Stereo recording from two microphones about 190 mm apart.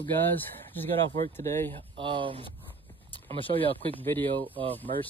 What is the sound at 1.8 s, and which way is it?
Speech, 25° right (ahead or behind).